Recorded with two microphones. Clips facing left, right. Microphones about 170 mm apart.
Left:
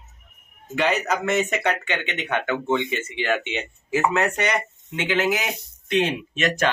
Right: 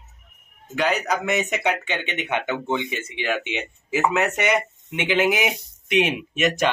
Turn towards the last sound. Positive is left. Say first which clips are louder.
# right 1 dB
turn(degrees=-10)  # may be behind; listen again after turning